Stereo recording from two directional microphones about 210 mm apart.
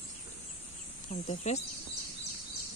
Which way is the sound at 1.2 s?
30° left (ahead or behind).